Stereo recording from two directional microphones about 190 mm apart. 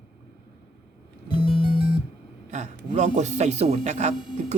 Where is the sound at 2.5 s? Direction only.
40° right (ahead or behind).